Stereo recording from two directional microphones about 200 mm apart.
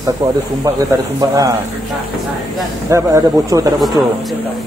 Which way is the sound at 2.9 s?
15° right (ahead or behind).